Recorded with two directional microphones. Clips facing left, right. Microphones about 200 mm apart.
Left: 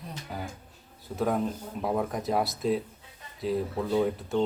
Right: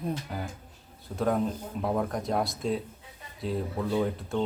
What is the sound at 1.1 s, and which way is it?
A man's voice, centre (ahead or behind).